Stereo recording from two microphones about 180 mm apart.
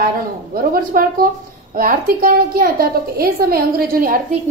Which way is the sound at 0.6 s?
55° right (ahead or behind).